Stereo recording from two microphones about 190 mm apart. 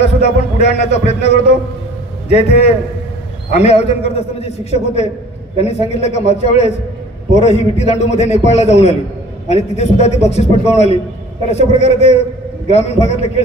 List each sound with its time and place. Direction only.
0.0 s a man's voice: 35° left (ahead or behind)
3.5 s a man's voice: 35° left (ahead or behind)